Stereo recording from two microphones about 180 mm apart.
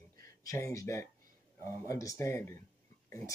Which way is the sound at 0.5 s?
15° left (ahead or behind).